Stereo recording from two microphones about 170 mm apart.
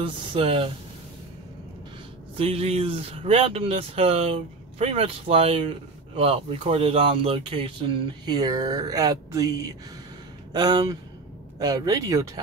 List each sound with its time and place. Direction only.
0.0 s speech: 30° right (ahead or behind)
2.3 s speech: 35° right (ahead or behind)